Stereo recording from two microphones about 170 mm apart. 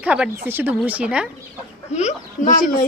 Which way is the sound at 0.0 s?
5° right (ahead or behind).